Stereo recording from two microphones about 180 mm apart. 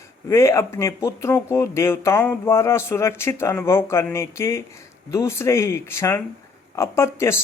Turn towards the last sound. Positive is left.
turn(degrees=15)  # may be behind; listen again after turning